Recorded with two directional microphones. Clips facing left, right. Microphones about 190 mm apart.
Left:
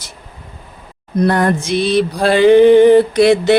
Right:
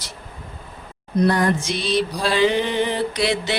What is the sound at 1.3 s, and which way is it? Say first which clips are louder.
Speech: left 6 dB; 55° left (ahead or behind).